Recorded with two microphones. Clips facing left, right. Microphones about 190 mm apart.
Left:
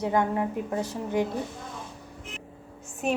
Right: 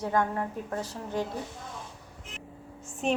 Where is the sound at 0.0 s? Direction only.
15° left (ahead or behind).